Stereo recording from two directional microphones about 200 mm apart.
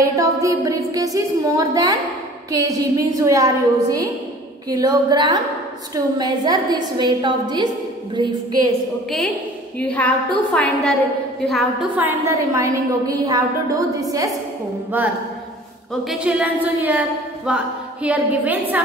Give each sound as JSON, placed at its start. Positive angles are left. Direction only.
{"t": 0.0, "sound": "a woman's voice", "side_deg": -15}
{"t": 9.8, "sound": "a woman's voice", "side_deg": 5}
{"t": 12.0, "sound": "a woman's voice", "side_deg": -15}